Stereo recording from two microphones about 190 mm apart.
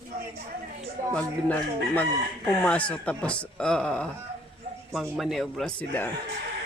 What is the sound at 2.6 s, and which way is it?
Speech, 5° left (ahead or behind).